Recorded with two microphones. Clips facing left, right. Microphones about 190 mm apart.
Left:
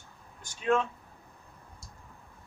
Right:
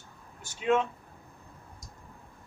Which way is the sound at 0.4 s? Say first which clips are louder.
Right 1 dB; 10° right (ahead or behind).